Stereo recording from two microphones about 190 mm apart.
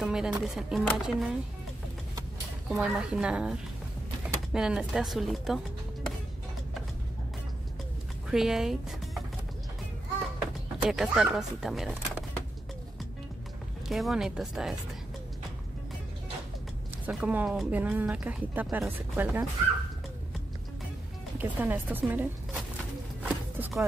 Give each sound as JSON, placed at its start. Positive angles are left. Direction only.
{"t": 0.0, "sound": "speech", "side_deg": -5}
{"t": 2.7, "sound": "speech", "side_deg": -5}
{"t": 8.3, "sound": "speech", "side_deg": 0}
{"t": 10.8, "sound": "speech", "side_deg": -5}
{"t": 13.8, "sound": "speech", "side_deg": 0}
{"t": 17.0, "sound": "speech", "side_deg": -5}
{"t": 21.4, "sound": "a woman's voice", "side_deg": -10}
{"t": 23.2, "sound": "a sound", "side_deg": -5}